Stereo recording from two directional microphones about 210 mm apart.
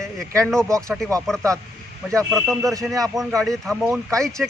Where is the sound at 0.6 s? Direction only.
15° right (ahead or behind).